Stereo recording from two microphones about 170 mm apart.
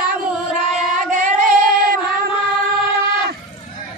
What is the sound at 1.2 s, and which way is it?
Singing, 50° right (ahead or behind).